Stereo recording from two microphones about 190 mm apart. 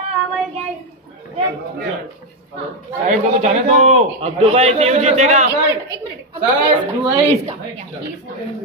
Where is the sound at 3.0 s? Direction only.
40° right (ahead or behind).